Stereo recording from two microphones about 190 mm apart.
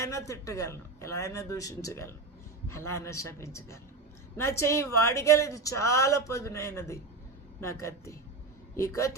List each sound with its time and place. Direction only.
0.0 s a woman's voice: 15° left (ahead or behind)